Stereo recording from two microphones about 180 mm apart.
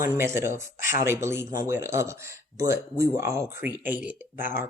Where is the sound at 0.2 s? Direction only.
15° right (ahead or behind).